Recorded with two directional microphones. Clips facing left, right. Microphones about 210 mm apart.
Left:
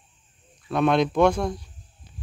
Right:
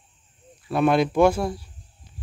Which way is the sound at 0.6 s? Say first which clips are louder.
Right 1 dB; 5° right (ahead or behind).